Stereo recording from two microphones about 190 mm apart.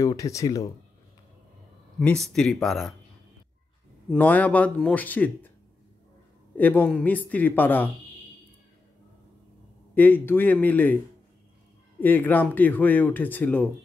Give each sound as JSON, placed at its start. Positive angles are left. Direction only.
{"t": 0.0, "sound": "speech", "side_deg": 15}
{"t": 2.0, "sound": "speech", "side_deg": 0}
{"t": 4.1, "sound": "speech", "side_deg": 10}
{"t": 6.5, "sound": "speech", "side_deg": 10}
{"t": 9.9, "sound": "speech", "side_deg": 10}
{"t": 12.0, "sound": "speech", "side_deg": 10}